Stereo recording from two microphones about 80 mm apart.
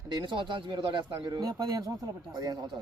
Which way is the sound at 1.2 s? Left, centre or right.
Right.